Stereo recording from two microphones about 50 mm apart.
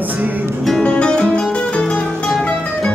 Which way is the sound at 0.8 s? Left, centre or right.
Centre.